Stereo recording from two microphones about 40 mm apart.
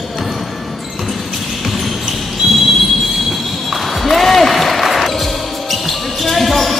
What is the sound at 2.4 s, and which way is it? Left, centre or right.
Train, centre.